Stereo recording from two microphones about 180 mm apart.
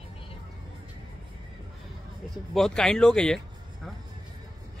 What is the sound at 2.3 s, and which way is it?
Speech, centre (ahead or behind).